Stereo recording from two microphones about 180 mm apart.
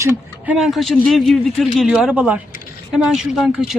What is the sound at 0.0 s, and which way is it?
Speech, 5° right (ahead or behind).